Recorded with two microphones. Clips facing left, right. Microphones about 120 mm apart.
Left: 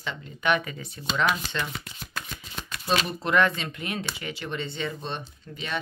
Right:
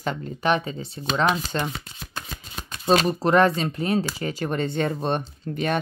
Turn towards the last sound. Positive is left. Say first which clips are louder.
# right 10 dB
turn(degrees=-50)  # may be behind; listen again after turning